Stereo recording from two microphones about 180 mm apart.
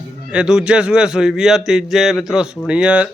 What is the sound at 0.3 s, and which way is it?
A man's voice, 5° right (ahead or behind).